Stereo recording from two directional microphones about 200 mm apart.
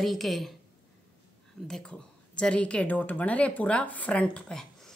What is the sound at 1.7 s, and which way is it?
A woman's voice, 5° left (ahead or behind).